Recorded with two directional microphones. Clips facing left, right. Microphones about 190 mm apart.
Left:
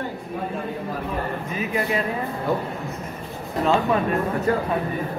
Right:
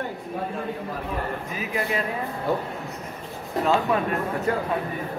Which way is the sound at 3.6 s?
Centre (ahead or behind).